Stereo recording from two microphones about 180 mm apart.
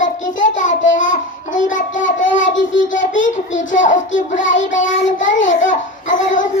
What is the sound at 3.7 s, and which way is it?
Child singing, 45° left (ahead or behind).